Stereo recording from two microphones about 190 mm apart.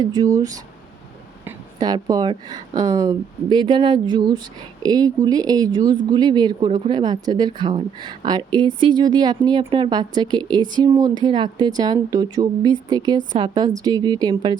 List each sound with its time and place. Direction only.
0.0 s speech: 20° right (ahead or behind)
1.8 s speech: 20° right (ahead or behind)